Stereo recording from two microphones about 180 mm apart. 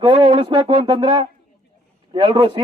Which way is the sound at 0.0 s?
30° right (ahead or behind).